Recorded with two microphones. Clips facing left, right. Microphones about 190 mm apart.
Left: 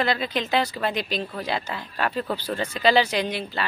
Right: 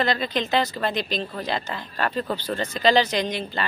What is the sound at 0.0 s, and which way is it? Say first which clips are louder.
A woman's voice: right 1 dB; 10° left (ahead or behind).